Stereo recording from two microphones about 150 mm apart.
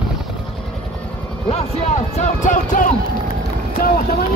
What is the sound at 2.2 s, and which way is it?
Music, 55° left (ahead or behind).